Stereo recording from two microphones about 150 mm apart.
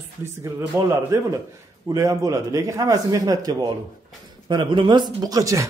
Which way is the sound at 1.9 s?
20° right (ahead or behind).